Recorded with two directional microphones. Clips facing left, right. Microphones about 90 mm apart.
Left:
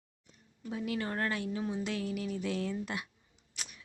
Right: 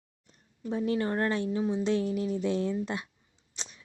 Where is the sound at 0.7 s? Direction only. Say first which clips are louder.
Right 7 dB; 30° right (ahead or behind).